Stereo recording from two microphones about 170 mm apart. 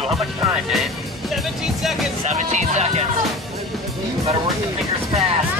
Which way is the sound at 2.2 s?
45° right (ahead or behind).